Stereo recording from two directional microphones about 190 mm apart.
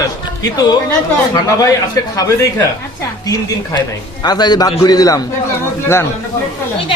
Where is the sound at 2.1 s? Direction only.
15° left (ahead or behind).